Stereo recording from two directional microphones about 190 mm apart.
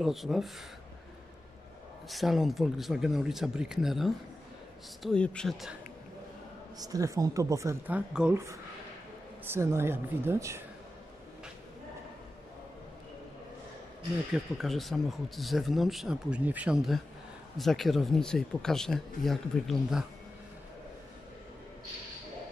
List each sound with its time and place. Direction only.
0.0 s speech: centre (ahead or behind)
2.0 s speech: centre (ahead or behind)
6.8 s a woman's voice: 20° right (ahead or behind)
14.3 s speech: centre (ahead or behind)